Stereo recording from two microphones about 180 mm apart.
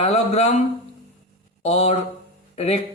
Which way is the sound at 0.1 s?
35° left (ahead or behind).